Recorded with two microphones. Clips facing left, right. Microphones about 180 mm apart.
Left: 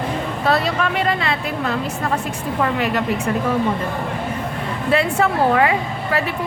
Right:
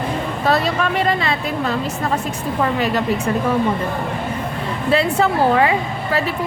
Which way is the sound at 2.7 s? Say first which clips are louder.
Right 1 dB; 35° right (ahead or behind).